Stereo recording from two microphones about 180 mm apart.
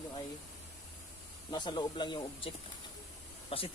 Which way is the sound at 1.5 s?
25° left (ahead or behind).